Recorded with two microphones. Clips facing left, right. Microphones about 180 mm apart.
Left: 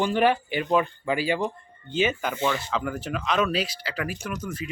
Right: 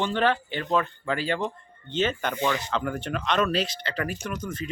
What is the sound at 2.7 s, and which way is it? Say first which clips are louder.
Speech: even; 5° left (ahead or behind).